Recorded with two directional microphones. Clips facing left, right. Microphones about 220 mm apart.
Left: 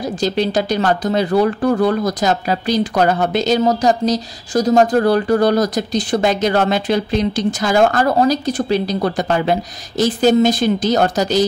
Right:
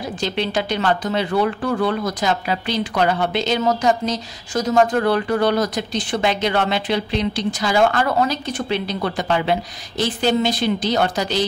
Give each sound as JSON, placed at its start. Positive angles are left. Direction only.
{"t": 0.2, "sound": "speech", "side_deg": 40}